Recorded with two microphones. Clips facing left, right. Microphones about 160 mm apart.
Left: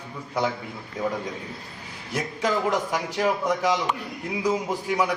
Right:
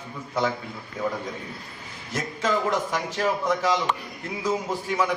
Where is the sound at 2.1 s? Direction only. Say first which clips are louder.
Even; 15° left (ahead or behind).